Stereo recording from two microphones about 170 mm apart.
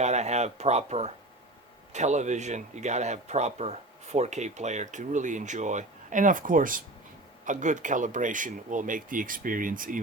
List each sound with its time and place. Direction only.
0.0 s speech: 40° right (ahead or behind)